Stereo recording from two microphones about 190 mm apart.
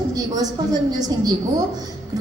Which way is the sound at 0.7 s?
20° right (ahead or behind).